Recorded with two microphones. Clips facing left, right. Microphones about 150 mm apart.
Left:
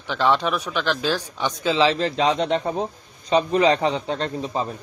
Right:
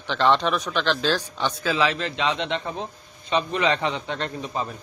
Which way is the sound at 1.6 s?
30° left (ahead or behind).